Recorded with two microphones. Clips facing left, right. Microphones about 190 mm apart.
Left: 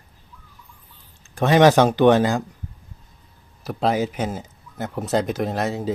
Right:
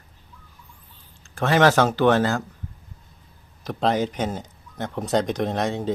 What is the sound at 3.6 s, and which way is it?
Speech, 5° left (ahead or behind).